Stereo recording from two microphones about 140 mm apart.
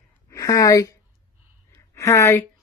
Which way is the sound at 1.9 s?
20° left (ahead or behind).